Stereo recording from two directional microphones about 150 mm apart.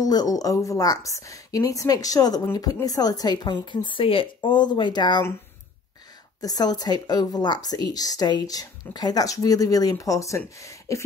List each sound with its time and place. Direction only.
0.0 s a woman's voice: 25° left (ahead or behind)
6.4 s a woman's voice: 25° left (ahead or behind)